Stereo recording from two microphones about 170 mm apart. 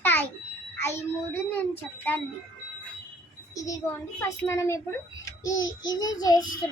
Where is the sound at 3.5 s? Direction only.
20° left (ahead or behind).